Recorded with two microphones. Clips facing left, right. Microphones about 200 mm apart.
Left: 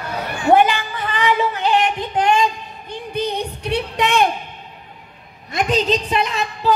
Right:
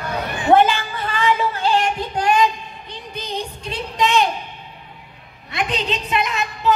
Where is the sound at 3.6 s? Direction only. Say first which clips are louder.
Left 2 dB; 65° left (ahead or behind).